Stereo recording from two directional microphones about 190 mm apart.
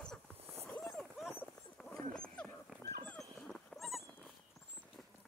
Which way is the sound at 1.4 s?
5° left (ahead or behind).